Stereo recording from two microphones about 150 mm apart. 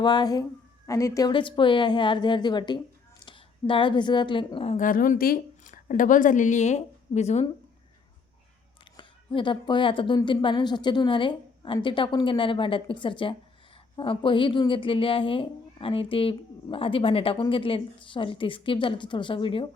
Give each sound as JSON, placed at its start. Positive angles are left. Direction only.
{"t": 0.0, "sound": "speech", "side_deg": 30}
{"t": 1.3, "sound": "a woman's voice", "side_deg": 35}
{"t": 4.8, "sound": "a woman's voice", "side_deg": 65}
{"t": 8.8, "sound": "a woman's voice", "side_deg": 35}